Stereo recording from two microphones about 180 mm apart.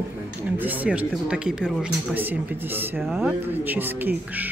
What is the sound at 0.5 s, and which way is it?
Speech, 10° right (ahead or behind).